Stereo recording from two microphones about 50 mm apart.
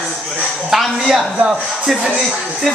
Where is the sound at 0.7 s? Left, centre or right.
Centre.